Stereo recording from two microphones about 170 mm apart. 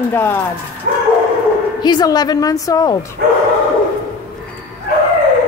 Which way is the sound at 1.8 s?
25° left (ahead or behind).